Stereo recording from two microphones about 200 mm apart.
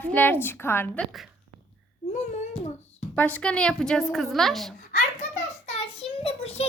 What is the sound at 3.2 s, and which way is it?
A woman's voice, 5° left (ahead or behind).